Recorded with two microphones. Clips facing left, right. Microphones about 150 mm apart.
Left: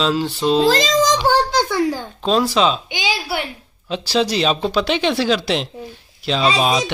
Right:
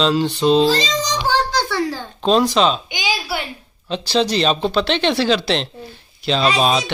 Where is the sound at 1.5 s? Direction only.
15° left (ahead or behind).